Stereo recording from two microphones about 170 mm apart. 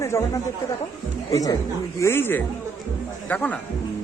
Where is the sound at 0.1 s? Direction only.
20° left (ahead or behind).